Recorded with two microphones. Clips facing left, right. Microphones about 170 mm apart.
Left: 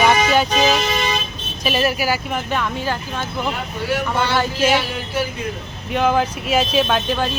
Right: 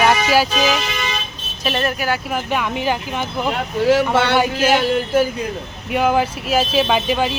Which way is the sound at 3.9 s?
85° right.